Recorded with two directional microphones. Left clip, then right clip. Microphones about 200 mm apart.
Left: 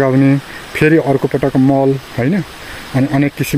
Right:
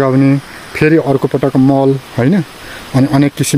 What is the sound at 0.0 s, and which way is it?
Speech, 5° right (ahead or behind).